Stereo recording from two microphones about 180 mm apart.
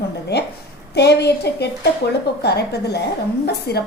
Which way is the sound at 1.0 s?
65° left (ahead or behind).